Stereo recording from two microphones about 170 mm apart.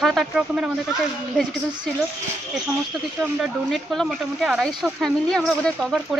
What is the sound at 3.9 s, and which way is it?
Speech, 5° right (ahead or behind).